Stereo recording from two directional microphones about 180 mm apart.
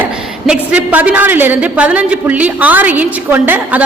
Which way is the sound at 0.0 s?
5° right (ahead or behind).